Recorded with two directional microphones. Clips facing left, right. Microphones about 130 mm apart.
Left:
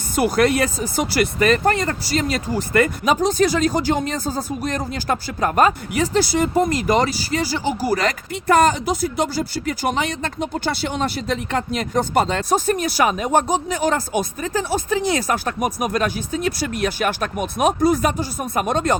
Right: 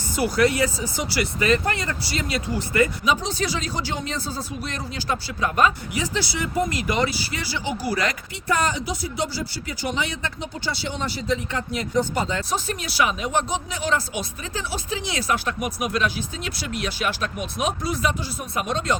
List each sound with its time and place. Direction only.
0.2 s speech: 55° left (ahead or behind)